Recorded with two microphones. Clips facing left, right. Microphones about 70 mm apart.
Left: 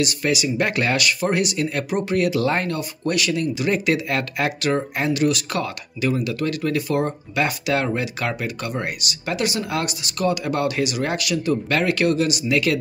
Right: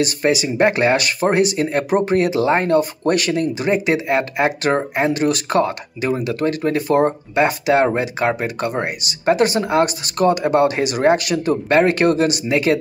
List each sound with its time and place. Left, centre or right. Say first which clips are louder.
0.0 s speech: right 4 dB; right
3.7 s speech: right 6 dB; right